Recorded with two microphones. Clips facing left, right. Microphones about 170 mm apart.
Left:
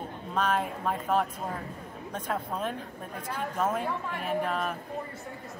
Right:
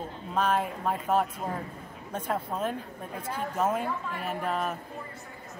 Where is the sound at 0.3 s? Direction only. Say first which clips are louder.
Right 1 dB; 10° right (ahead or behind).